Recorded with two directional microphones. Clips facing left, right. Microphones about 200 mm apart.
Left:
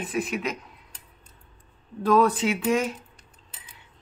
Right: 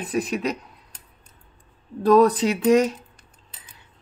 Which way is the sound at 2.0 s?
35° right (ahead or behind).